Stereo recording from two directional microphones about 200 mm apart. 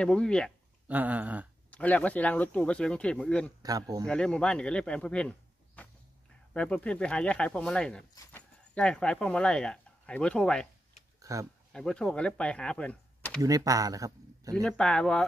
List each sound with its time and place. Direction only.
0.0 s speech: 5° left (ahead or behind)
0.8 s a sound: 10° right (ahead or behind)
1.7 s speech: 5° left (ahead or behind)
3.6 s a sound: 20° right (ahead or behind)
4.1 s speech: 5° left (ahead or behind)
5.8 s walk: 5° left (ahead or behind)
6.5 s speech: 5° left (ahead or behind)
11.1 s a sound: 15° right (ahead or behind)
11.7 s speech: 5° left (ahead or behind)
13.4 s speech: 15° right (ahead or behind)
14.5 s speech: 5° left (ahead or behind)